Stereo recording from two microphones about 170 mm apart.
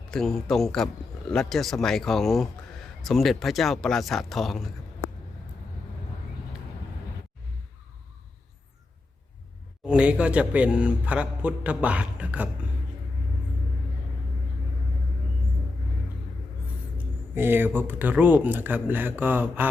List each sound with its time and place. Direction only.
0.1 s speech: centre (ahead or behind)
9.8 s a man's voice: 5° right (ahead or behind)
17.3 s a man's voice: 10° right (ahead or behind)